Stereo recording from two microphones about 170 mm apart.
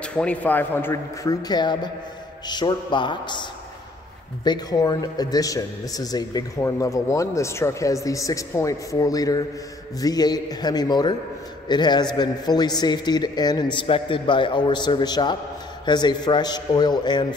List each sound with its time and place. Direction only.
0.0 s a man's voice: 5° left (ahead or behind); by 3.4 s 25° left (ahead or behind)
4.5 s a man's voice: 25° left (ahead or behind)